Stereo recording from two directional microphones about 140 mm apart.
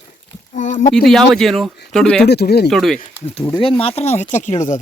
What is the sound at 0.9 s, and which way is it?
Speech, centre (ahead or behind).